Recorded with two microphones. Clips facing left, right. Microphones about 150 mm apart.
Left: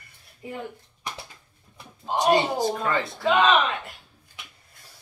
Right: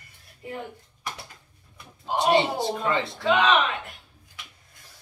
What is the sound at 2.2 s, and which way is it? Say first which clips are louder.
Speech: left 1 dB; 25° right (ahead or behind).